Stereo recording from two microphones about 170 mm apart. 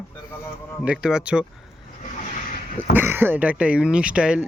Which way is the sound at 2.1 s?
50° left (ahead or behind).